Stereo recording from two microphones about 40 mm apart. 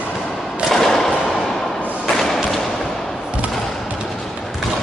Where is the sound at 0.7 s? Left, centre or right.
Centre.